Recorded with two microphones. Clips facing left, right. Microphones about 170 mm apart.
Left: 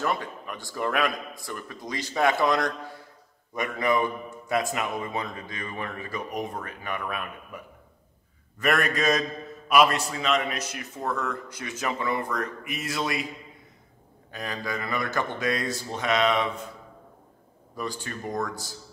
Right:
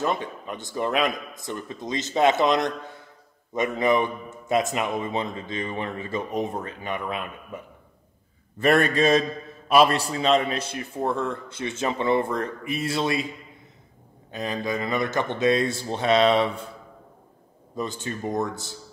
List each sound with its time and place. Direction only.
0.0 s a man's voice: 20° right (ahead or behind)
14.3 s a man's voice: 20° right (ahead or behind)
17.7 s a man's voice: 20° right (ahead or behind)